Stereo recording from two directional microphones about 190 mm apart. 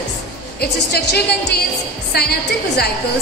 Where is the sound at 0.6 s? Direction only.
60° left (ahead or behind).